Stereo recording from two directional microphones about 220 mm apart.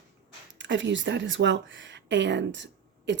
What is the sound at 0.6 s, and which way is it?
A woman's voice, 55° right (ahead or behind).